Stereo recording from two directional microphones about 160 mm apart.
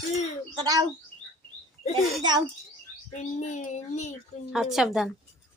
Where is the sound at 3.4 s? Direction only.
50° left (ahead or behind).